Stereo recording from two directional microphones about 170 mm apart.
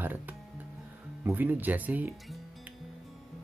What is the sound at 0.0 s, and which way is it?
Music, 10° right (ahead or behind).